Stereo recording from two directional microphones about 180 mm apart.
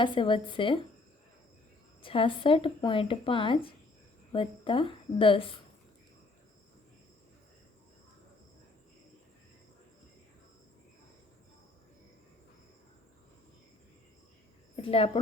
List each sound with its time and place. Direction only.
0.0 s speech: 25° left (ahead or behind)
2.0 s speech: 30° left (ahead or behind)
14.8 s a woman's voice: 30° left (ahead or behind)